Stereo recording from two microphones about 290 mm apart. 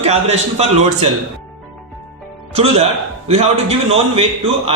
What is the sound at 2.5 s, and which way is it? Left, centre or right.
A man's voice, right.